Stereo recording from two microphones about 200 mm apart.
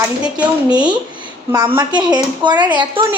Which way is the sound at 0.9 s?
20° right (ahead or behind).